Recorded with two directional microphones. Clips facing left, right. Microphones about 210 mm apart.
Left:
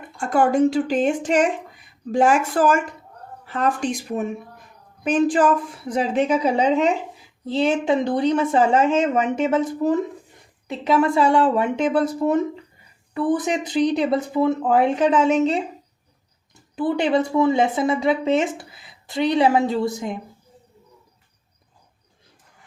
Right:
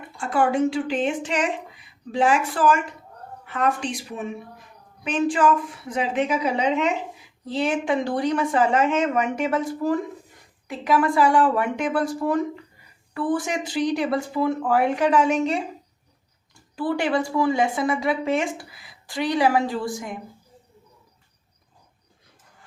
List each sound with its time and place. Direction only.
0.2 s speech: 45° left (ahead or behind)
3.4 s a woman's voice: 35° left (ahead or behind)
3.8 s a woman's voice: 45° left (ahead or behind); by 20.1 s 20° left (ahead or behind)